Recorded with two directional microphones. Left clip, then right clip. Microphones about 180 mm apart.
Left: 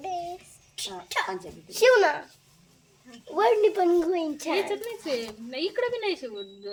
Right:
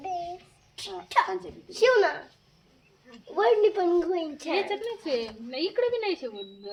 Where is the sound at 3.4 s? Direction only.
50° left (ahead or behind).